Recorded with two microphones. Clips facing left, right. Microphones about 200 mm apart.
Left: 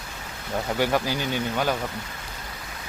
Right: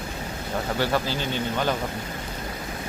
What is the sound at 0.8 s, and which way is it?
Speech, 15° left (ahead or behind).